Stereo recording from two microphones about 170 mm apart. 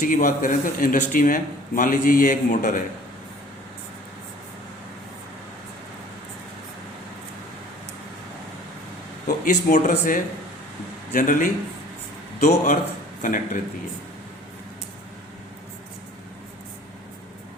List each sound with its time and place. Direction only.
0.0 s speech: 55° left (ahead or behind)
9.2 s speech: 50° left (ahead or behind)
11.1 s speech: 50° left (ahead or behind)